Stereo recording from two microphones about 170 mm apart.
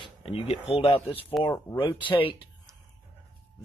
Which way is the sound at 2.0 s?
30° left (ahead or behind).